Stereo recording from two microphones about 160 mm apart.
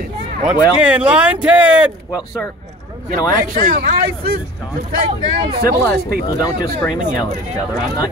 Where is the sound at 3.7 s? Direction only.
65° right (ahead or behind).